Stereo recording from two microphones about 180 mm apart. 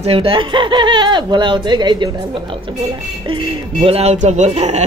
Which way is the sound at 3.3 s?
30° right (ahead or behind).